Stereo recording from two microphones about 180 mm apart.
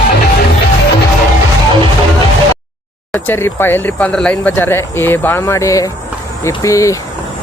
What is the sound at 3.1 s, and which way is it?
Speech, 15° left (ahead or behind).